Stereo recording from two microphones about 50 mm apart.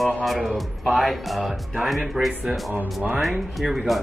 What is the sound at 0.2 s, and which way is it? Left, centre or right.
Speech, centre.